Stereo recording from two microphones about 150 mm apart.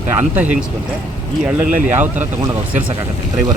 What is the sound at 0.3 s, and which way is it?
Speech, 10° right (ahead or behind).